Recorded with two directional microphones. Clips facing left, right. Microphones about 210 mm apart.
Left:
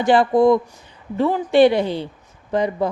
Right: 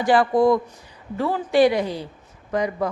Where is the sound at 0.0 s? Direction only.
25° left (ahead or behind).